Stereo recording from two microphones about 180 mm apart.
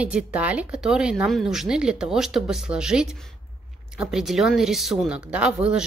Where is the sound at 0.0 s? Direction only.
5° right (ahead or behind).